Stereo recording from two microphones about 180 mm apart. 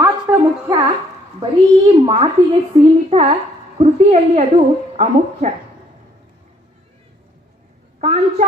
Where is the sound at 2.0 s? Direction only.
30° right (ahead or behind).